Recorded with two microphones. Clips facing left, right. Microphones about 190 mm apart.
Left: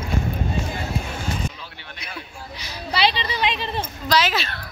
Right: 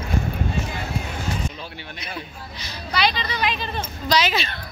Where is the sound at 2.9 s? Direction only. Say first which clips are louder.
Left 1 dB; 30° left (ahead or behind).